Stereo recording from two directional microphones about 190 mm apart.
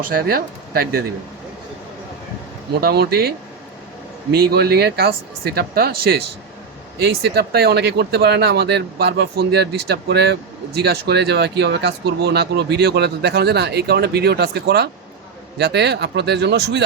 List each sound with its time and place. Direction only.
0.0 s speech: 50° right (ahead or behind)
2.8 s speech: 55° right (ahead or behind)